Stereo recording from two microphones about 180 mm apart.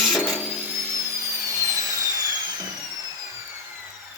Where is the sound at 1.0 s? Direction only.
15° right (ahead or behind).